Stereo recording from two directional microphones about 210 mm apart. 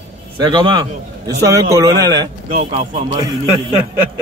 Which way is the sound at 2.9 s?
20° right (ahead or behind).